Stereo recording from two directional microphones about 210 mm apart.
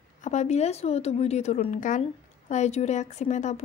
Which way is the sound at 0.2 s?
35° left (ahead or behind).